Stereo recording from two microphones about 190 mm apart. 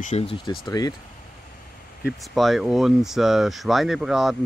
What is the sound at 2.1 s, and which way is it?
Speech, centre (ahead or behind).